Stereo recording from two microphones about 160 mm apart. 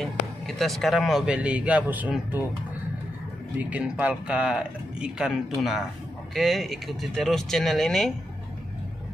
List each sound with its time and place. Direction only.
0.0 s a man's voice: centre (ahead or behind)
3.5 s speech: 5° right (ahead or behind)